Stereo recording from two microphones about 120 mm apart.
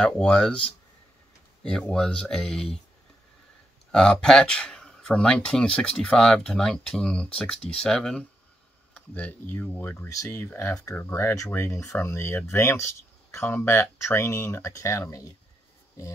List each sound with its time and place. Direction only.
0.0 s speech: 10° left (ahead or behind)
3.9 s speech: 5° left (ahead or behind); by 15.3 s 25° left (ahead or behind)